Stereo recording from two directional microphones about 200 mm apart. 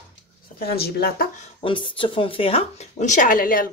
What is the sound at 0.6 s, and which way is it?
Speech, 50° left (ahead or behind).